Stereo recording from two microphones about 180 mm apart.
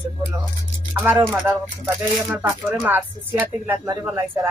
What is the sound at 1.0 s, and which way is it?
Speech, 10° right (ahead or behind).